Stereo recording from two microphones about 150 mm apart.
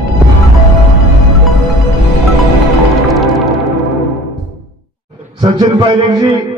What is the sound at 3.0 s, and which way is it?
Music, centre (ahead or behind).